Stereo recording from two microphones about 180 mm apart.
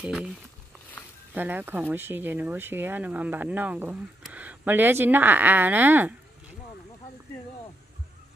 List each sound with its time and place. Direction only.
0.0 s speech: 5° right (ahead or behind)
1.3 s speech: 10° right (ahead or behind)